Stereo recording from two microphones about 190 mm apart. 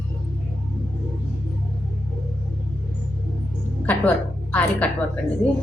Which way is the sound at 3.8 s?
10° left (ahead or behind).